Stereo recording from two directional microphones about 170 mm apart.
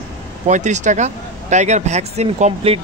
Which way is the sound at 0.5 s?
45° right (ahead or behind).